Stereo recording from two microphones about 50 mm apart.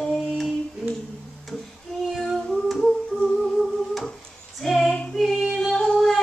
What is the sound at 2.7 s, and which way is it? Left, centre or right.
Music, centre.